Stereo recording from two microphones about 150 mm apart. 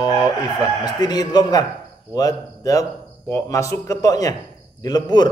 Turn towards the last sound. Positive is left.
turn(degrees=25)  # may be behind; listen again after turning